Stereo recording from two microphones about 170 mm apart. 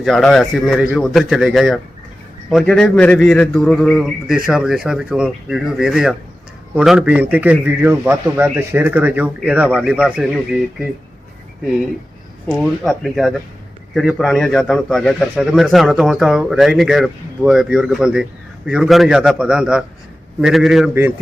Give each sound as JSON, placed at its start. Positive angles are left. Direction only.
{"t": 0.0, "sound": "a man's voice", "side_deg": 0}
{"t": 12.6, "sound": "a man's voice", "side_deg": 0}